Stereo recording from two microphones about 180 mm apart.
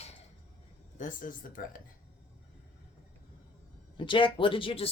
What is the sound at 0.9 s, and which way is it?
Speech, 45° left (ahead or behind).